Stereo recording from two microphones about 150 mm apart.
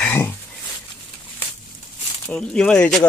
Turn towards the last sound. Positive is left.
turn(degrees=5)  # may be behind; listen again after turning